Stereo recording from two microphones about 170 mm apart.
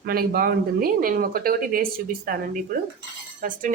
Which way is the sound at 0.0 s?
60° right (ahead or behind).